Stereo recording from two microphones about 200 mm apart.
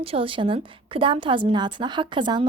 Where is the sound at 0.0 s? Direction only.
25° right (ahead or behind).